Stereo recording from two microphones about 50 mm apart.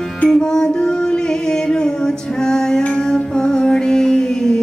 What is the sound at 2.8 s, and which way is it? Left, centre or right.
Music, centre.